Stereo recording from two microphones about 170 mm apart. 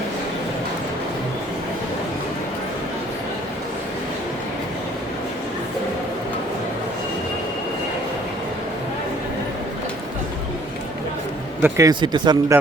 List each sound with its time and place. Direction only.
11.6 s speech: 20° right (ahead or behind)